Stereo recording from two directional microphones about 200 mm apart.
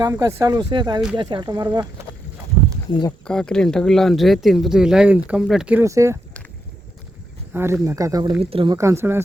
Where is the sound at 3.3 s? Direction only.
5° left (ahead or behind); by 6.2 s 15° right (ahead or behind).